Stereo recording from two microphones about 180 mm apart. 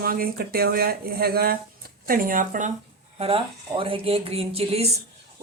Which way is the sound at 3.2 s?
30° right (ahead or behind).